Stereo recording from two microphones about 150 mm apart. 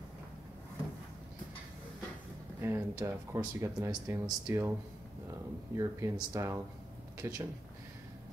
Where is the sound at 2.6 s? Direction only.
15° right (ahead or behind).